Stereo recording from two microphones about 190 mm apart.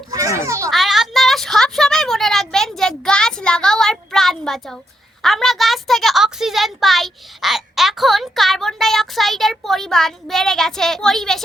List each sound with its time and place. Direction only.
0.1 s children playing: 15° right (ahead or behind)
0.7 s a sound: centre (ahead or behind)
5.2 s a woman's voice: centre (ahead or behind)